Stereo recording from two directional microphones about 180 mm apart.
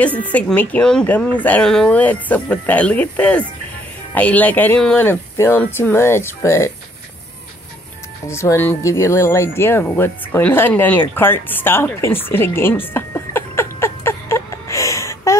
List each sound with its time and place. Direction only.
0.0 s speech: 10° left (ahead or behind)
8.3 s speech: 15° left (ahead or behind)
13.7 s a sound: 15° left (ahead or behind)